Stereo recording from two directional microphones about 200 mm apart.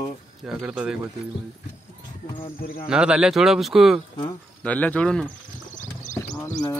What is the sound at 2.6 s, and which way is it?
Speech, 45° left (ahead or behind).